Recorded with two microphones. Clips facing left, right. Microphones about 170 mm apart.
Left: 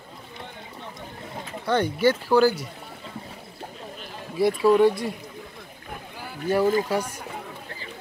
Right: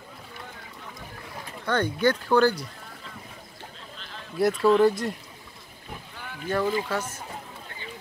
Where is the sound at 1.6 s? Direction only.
10° left (ahead or behind).